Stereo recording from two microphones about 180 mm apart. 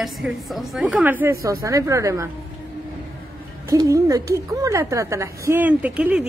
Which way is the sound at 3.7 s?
20° right (ahead or behind).